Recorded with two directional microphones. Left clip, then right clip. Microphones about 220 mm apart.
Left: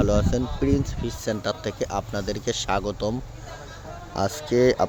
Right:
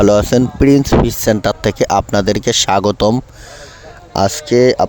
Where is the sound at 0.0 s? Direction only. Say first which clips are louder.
Right 13 dB; 50° right (ahead or behind).